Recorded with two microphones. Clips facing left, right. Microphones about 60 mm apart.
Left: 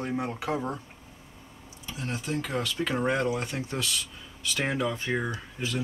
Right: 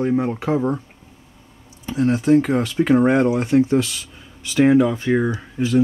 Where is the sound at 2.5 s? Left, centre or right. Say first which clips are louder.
Right 12 dB; right.